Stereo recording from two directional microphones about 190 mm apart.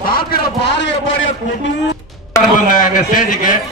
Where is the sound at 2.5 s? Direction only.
45° left (ahead or behind).